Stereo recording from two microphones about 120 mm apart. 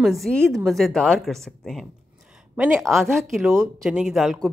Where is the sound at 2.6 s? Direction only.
10° right (ahead or behind).